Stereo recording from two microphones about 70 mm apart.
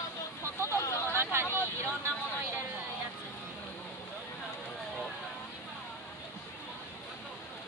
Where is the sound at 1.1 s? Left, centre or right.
Right.